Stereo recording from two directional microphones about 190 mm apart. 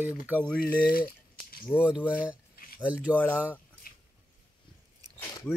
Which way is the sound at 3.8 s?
50° left (ahead or behind).